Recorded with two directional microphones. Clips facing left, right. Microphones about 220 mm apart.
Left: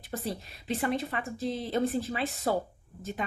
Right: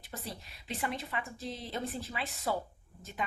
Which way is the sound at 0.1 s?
50° left (ahead or behind).